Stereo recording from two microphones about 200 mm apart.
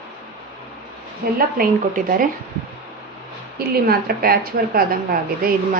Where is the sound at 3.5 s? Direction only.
50° right (ahead or behind).